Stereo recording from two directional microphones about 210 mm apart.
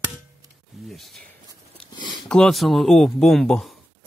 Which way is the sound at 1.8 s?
5° left (ahead or behind).